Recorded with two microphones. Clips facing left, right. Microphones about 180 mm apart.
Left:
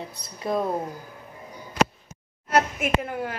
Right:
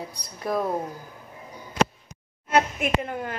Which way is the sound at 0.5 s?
25° left (ahead or behind).